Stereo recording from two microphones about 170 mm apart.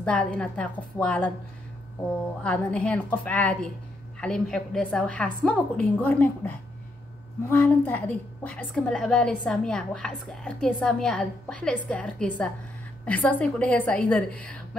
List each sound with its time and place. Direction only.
0.0 s a woman's voice: 5° left (ahead or behind)
2.4 s a woman's voice: 5° left (ahead or behind)